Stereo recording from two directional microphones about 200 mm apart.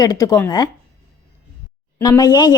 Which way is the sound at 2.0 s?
20° left (ahead or behind).